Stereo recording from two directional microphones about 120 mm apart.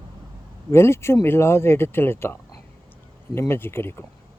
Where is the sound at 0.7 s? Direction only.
20° left (ahead or behind).